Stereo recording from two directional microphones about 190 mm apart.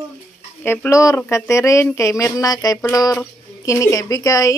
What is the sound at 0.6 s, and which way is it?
A woman's voice, 10° left (ahead or behind).